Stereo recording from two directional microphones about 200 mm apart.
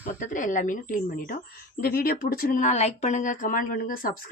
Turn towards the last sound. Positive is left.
turn(degrees=45)  # may be behind; listen again after turning